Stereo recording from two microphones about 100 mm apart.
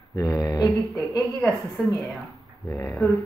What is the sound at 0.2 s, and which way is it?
Mantra, 35° left (ahead or behind).